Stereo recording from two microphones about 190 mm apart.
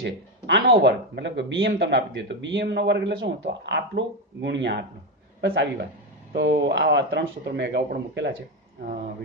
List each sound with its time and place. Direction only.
0.0 s a man's voice: 65° right (ahead or behind)